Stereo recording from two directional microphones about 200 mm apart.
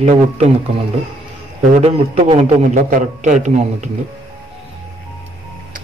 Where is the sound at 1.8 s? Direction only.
30° right (ahead or behind).